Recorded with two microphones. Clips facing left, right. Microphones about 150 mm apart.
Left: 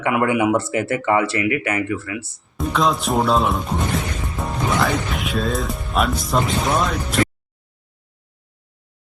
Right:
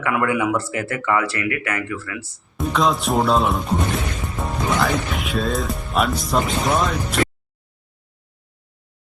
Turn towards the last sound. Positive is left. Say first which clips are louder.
# even
turn(degrees=0)  # may be behind; listen again after turning